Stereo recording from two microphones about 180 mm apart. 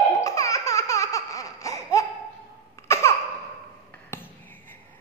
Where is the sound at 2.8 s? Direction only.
15° left (ahead or behind).